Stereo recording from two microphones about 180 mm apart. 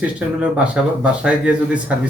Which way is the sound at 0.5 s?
5° right (ahead or behind).